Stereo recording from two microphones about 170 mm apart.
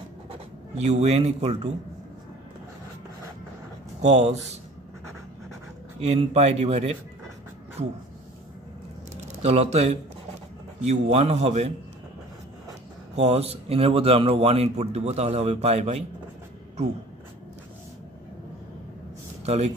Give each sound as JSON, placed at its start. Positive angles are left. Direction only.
{"t": 0.3, "sound": "speech", "side_deg": -40}
{"t": 4.0, "sound": "a man's voice", "side_deg": -40}
{"t": 5.9, "sound": "a man's voice", "side_deg": -40}
{"t": 9.1, "sound": "a sound", "side_deg": -40}
{"t": 10.8, "sound": "a man's voice", "side_deg": -40}
{"t": 13.1, "sound": "a man's voice", "side_deg": -40}
{"t": 19.4, "sound": "speech", "side_deg": -40}